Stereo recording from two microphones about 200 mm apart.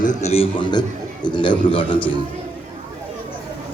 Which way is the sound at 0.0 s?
35° left (ahead or behind).